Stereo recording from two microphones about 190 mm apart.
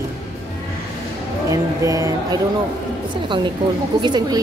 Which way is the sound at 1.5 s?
15° right (ahead or behind).